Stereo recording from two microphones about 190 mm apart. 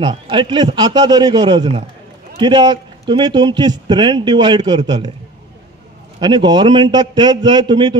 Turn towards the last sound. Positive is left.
turn(degrees=-25)  # may be behind; listen again after turning